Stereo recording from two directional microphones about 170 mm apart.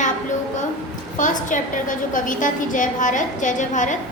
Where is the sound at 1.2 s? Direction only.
50° left (ahead or behind).